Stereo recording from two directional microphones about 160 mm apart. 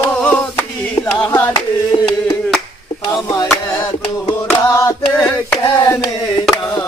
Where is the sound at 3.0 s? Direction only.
20° left (ahead or behind).